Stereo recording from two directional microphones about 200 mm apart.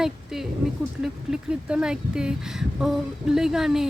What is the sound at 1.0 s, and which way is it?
Speech, 5° right (ahead or behind).